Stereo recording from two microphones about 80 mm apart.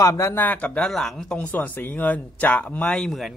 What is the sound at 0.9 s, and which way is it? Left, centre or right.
Speech, centre.